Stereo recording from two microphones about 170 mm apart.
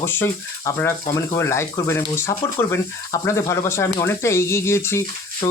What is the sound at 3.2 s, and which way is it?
Speech, 15° left (ahead or behind).